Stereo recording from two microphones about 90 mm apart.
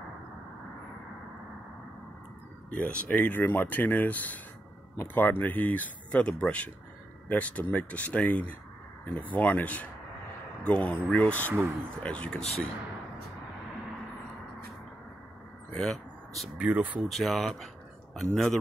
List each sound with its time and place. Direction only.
2.7 s speech: 15° left (ahead or behind)
15.7 s a sound: 5° left (ahead or behind)
16.5 s speech: 15° right (ahead or behind)
17.1 s speech: centre (ahead or behind)